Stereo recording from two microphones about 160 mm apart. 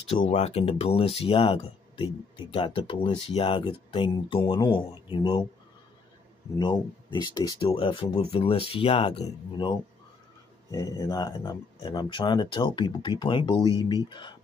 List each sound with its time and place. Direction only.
0.0 s speech: 40° left (ahead or behind)
6.6 s speech: 30° left (ahead or behind)
7.7 s speech: 35° left (ahead or behind)
10.7 s speech: 25° left (ahead or behind)